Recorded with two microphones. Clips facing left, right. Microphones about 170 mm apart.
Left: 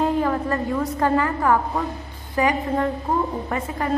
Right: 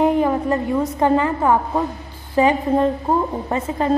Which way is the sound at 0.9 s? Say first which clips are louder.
Right 3 dB; 20° right (ahead or behind).